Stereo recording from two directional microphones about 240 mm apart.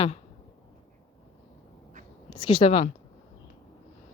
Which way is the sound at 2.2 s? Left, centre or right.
Centre.